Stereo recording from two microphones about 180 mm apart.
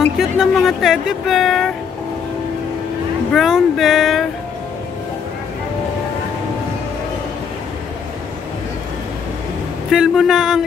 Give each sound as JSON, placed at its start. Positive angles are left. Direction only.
{"t": 0.2, "sound": "speech", "side_deg": 0}
{"t": 3.3, "sound": "speech", "side_deg": 0}
{"t": 9.8, "sound": "speech", "side_deg": 0}